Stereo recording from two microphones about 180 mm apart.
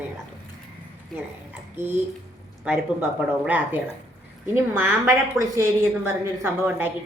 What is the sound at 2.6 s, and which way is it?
A woman's voice, 10° right (ahead or behind).